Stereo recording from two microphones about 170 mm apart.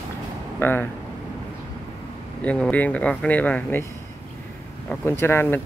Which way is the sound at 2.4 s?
5° left (ahead or behind).